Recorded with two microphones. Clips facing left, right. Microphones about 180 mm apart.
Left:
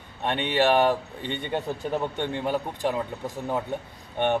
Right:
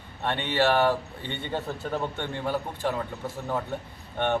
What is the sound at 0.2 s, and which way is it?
A man's voice, 15° left (ahead or behind).